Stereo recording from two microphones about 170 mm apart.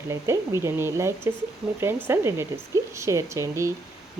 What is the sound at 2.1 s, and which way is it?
Speech, 15° right (ahead or behind).